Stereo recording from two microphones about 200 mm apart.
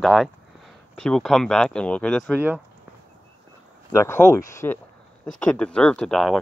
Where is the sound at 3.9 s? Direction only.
15° left (ahead or behind).